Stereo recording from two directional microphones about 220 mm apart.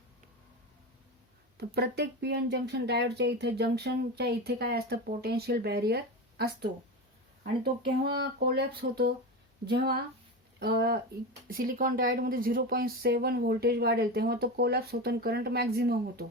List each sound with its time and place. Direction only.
1.5 s speech: 50° right (ahead or behind)